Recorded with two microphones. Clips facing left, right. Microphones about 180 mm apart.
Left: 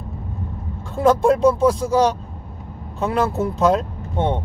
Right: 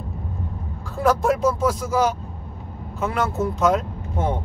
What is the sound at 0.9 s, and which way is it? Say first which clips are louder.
A man's voice: left 4 dB; 25° left (ahead or behind).